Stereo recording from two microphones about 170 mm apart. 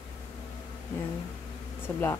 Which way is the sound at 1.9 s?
15° left (ahead or behind).